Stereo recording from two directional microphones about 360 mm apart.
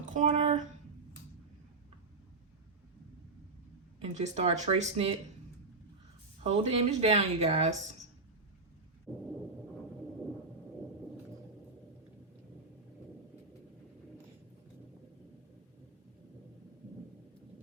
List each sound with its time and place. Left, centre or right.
0.0 s a sound: right
4.0 s speech: centre
6.4 s speech: centre